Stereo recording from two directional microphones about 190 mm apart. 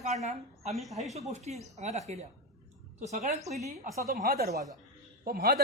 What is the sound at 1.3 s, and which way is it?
Speech, 35° right (ahead or behind).